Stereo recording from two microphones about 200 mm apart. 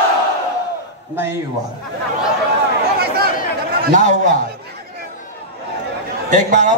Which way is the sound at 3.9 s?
40° right (ahead or behind).